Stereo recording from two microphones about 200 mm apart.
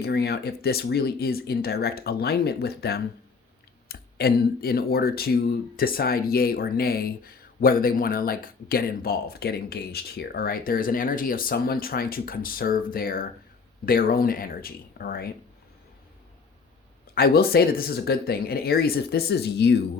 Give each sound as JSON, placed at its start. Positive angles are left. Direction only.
{"t": 0.0, "sound": "speech", "side_deg": 55}
{"t": 17.2, "sound": "speech", "side_deg": 50}